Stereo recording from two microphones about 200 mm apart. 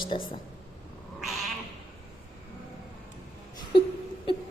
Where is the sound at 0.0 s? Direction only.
25° left (ahead or behind).